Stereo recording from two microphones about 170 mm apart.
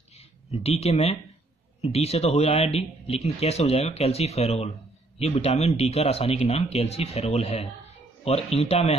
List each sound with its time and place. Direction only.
0.5 s speech: 35° left (ahead or behind)